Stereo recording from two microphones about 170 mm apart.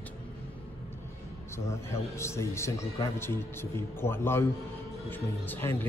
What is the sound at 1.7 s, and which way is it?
Speech, 15° left (ahead or behind).